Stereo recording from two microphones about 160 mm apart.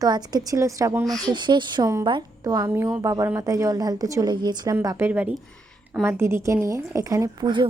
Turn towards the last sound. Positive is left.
turn(degrees=-30)  # may be behind; listen again after turning